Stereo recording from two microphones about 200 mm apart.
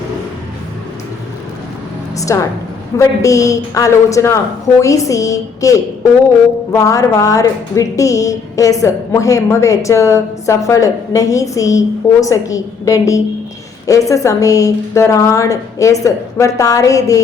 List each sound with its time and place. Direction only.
2.1 s a woman's voice: 15° left (ahead or behind)